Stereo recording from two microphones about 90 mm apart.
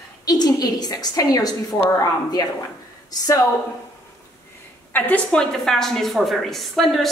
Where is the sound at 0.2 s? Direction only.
45° left (ahead or behind).